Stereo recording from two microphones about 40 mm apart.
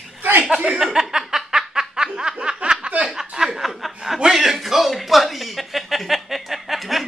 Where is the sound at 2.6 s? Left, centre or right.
Right.